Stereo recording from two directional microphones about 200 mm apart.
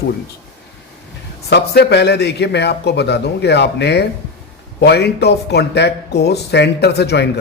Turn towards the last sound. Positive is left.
turn(degrees=55)  # may be behind; listen again after turning